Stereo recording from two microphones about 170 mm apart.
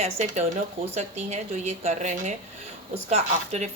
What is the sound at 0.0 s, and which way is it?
Speech, 40° right (ahead or behind).